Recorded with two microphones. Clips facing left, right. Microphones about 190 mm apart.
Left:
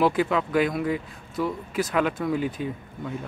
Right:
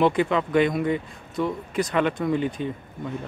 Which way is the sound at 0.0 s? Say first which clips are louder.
Right 1 dB; 5° left (ahead or behind).